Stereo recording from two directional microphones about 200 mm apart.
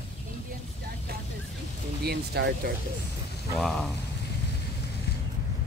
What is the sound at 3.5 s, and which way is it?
Speech, 5° left (ahead or behind).